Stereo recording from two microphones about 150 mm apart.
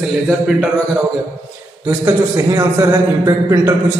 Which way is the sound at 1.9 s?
20° right (ahead or behind).